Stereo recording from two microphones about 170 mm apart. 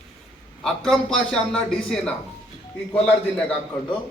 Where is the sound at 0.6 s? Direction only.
5° left (ahead or behind).